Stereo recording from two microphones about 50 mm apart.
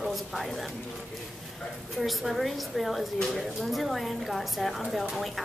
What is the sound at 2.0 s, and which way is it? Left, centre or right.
A woman's voice, centre.